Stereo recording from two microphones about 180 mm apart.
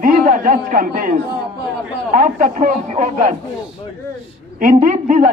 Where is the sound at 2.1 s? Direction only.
50° right (ahead or behind).